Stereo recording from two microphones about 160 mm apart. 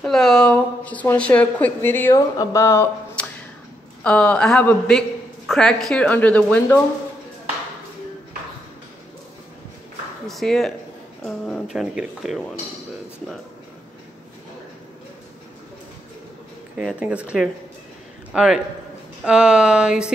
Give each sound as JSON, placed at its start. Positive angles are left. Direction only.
{"t": 0.0, "sound": "a woman's voice", "side_deg": 5}
{"t": 10.2, "sound": "speech", "side_deg": 0}
{"t": 16.7, "sound": "a man's voice", "side_deg": -5}